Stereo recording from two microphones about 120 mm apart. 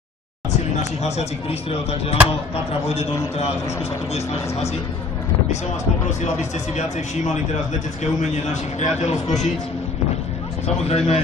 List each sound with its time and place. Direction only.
0.5 s speech: 65° left (ahead or behind)
8.7 s a man's voice: 70° left (ahead or behind)
10.8 s speech: 60° left (ahead or behind)